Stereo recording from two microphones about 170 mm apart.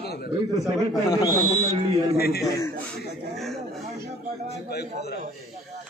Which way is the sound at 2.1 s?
65° left (ahead or behind).